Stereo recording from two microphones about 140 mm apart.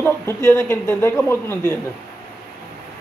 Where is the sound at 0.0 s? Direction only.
20° left (ahead or behind).